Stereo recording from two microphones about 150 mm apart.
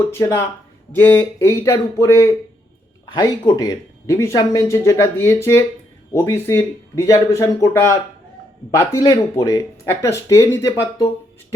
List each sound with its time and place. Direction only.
0.0 s speech: 20° left (ahead or behind)